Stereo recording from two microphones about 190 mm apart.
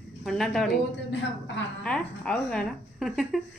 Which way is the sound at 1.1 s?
70° left (ahead or behind).